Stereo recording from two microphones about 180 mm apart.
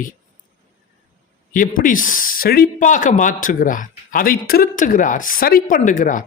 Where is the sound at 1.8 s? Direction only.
50° left (ahead or behind).